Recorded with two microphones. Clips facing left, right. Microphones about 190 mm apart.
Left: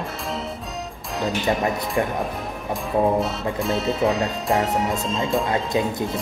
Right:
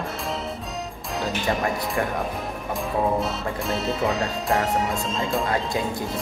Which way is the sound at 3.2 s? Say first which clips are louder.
Left 3 dB; centre (ahead or behind).